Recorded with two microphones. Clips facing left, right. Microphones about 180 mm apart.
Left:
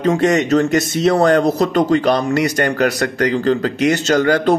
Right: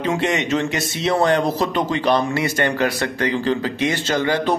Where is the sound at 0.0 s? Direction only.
40° left (ahead or behind).